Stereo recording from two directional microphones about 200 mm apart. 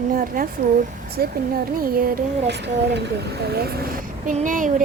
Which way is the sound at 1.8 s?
45° right (ahead or behind).